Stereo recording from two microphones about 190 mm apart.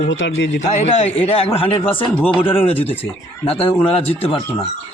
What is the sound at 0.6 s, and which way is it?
A man's voice, 35° left (ahead or behind).